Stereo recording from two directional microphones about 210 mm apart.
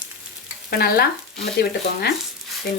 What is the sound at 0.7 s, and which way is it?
Speech, 50° left (ahead or behind).